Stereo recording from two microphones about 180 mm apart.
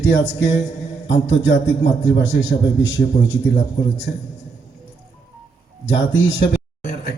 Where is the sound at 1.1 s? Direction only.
90° left.